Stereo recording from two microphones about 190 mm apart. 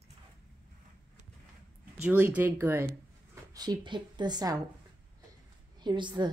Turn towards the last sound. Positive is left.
turn(degrees=-25)  # may be behind; listen again after turning